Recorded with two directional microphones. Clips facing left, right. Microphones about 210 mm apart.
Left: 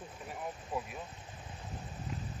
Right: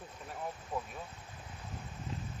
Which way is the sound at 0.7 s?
5° left (ahead or behind).